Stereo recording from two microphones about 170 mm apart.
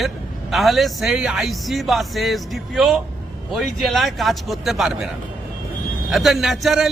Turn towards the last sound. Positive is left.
turn(degrees=0)  # may be behind; listen again after turning